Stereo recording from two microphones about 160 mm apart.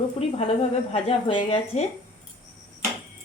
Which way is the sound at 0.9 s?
35° left (ahead or behind).